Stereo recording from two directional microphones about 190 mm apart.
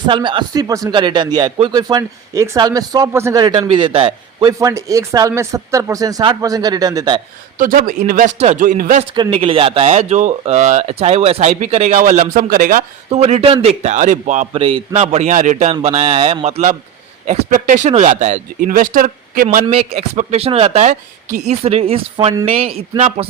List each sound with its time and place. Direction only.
0.0 s speech: 25° right (ahead or behind)
4.6 s speech: 15° right (ahead or behind)
7.6 s speech: 45° right (ahead or behind)
9.1 s speech: 30° right (ahead or behind); by 12.8 s 45° right (ahead or behind)
13.1 s speech: 35° right (ahead or behind)
19.6 s speech: 30° right (ahead or behind)